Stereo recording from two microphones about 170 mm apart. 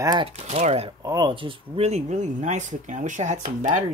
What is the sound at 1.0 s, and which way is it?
Speech, 25° right (ahead or behind).